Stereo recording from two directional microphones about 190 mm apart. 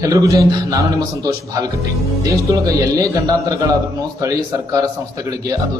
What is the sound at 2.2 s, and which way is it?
Speech, 20° right (ahead or behind).